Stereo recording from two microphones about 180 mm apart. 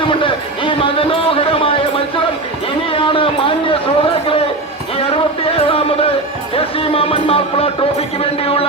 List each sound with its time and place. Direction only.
0.0 s music: 30° left (ahead or behind)
2.9 s a man's voice: 30° left (ahead or behind)
5.1 s music: 30° left (ahead or behind)
6.6 s speech: 30° left (ahead or behind)